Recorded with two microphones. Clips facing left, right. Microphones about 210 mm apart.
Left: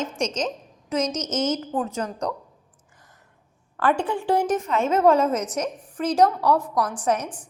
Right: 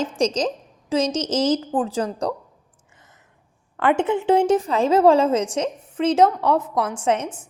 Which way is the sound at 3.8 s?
20° right (ahead or behind).